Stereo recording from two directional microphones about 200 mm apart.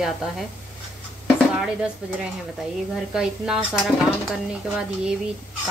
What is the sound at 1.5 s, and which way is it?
Speech, 5° right (ahead or behind).